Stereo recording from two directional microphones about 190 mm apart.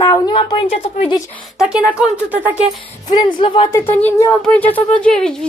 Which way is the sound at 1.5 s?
5° right (ahead or behind).